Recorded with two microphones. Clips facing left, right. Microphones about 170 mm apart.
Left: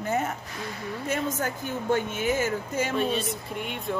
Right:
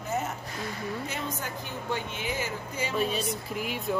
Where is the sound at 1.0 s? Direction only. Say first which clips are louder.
Left 6 dB; 50° left (ahead or behind).